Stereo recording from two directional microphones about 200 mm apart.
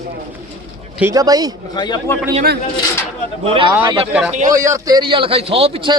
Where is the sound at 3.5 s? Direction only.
25° right (ahead or behind).